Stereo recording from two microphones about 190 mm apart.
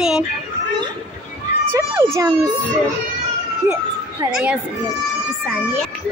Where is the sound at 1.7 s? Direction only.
15° right (ahead or behind).